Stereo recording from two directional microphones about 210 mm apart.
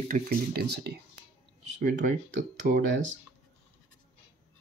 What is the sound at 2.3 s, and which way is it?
Speech, 55° right (ahead or behind).